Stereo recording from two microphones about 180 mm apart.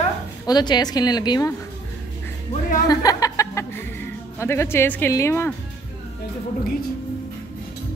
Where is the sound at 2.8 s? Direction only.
20° left (ahead or behind).